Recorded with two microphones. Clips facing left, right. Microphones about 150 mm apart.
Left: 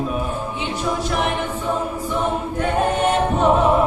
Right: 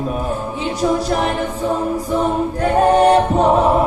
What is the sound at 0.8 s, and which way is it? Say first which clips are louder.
A capella: right 5 dB; 40° right (ahead or behind).